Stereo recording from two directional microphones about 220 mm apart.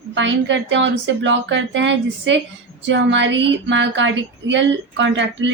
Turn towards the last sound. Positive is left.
turn(degrees=-55)  # may be behind; listen again after turning